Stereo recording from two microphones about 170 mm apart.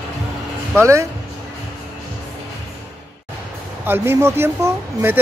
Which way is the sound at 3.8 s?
15° right (ahead or behind).